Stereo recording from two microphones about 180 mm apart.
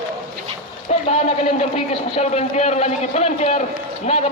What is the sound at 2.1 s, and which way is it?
A man's voice, 35° left (ahead or behind).